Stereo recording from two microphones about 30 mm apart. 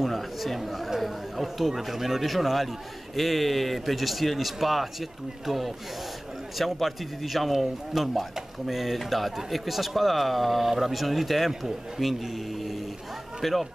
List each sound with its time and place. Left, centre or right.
0.0 s speech: centre
5.5 s speech: centre
6.6 s speech: centre
7.5 s speech: centre
8.0 s speech: centre